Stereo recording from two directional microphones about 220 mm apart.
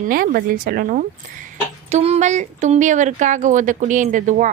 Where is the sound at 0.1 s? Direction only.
40° right (ahead or behind).